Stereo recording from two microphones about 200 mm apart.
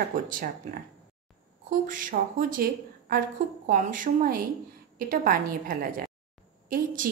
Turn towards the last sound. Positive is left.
turn(degrees=-45)  # may be behind; listen again after turning